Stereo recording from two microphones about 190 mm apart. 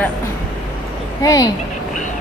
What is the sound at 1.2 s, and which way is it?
Speech, 20° left (ahead or behind).